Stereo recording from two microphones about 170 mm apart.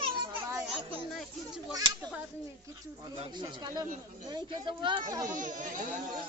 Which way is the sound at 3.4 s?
25° right (ahead or behind).